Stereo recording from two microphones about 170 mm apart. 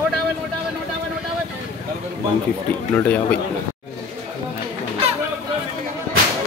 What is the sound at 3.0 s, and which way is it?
Speech, 10° left (ahead or behind).